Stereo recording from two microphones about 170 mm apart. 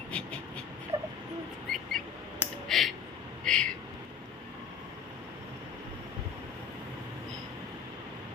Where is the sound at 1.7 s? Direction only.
Centre (ahead or behind).